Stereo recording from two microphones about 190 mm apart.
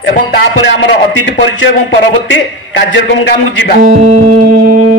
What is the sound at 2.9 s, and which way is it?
Speech, 70° left (ahead or behind).